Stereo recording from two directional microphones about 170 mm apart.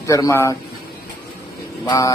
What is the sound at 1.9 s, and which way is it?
Speech, 20° left (ahead or behind).